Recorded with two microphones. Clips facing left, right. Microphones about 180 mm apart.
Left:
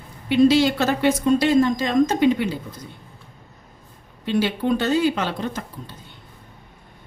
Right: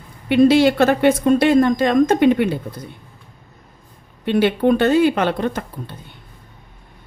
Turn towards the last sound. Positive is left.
turn(degrees=-55)  # may be behind; listen again after turning